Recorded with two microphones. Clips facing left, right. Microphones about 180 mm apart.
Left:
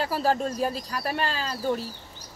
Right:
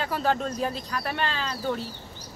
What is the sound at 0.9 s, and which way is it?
Speech, 35° left (ahead or behind).